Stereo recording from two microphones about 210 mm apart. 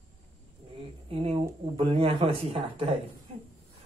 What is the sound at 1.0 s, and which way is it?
Speech, 25° right (ahead or behind).